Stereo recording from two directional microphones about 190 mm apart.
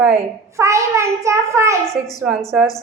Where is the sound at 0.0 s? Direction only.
10° right (ahead or behind).